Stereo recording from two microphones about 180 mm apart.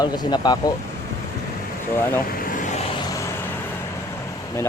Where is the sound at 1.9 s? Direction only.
10° left (ahead or behind).